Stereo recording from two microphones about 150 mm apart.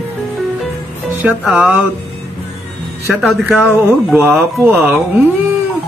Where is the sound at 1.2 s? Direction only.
Centre (ahead or behind).